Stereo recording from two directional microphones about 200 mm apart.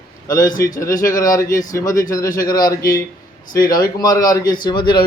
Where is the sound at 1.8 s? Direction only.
40° left (ahead or behind).